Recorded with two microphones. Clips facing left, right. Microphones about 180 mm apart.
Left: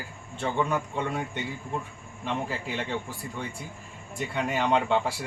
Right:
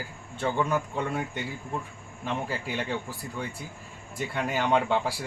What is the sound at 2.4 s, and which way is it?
Speech, centre (ahead or behind).